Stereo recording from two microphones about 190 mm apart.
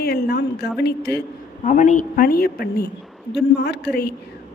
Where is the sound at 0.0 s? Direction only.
55° left (ahead or behind).